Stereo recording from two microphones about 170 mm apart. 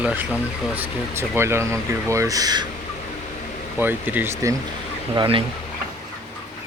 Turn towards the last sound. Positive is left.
turn(degrees=-30)  # may be behind; listen again after turning